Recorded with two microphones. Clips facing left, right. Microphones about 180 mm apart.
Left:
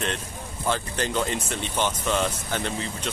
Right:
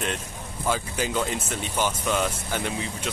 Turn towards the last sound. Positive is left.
turn(degrees=-10)  # may be behind; listen again after turning